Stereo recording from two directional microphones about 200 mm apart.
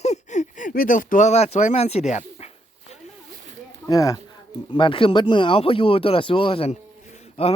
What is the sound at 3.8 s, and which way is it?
Speech, 15° left (ahead or behind).